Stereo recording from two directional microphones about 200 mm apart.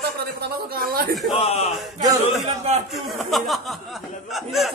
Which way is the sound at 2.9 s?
Centre (ahead or behind).